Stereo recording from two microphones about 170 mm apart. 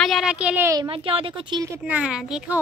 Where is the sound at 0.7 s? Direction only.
30° right (ahead or behind).